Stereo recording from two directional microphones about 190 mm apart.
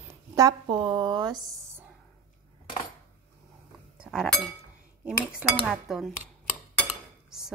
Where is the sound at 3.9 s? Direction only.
5° right (ahead or behind).